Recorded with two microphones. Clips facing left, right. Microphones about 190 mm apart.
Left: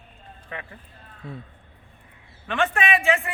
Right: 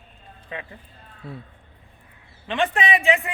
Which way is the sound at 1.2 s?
5° right (ahead or behind).